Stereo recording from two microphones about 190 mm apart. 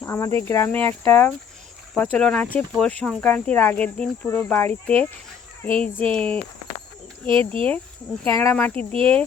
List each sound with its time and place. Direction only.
0.0 s speech: 15° left (ahead or behind)
7.3 s speech: 30° right (ahead or behind)
8.2 s speech: 10° left (ahead or behind)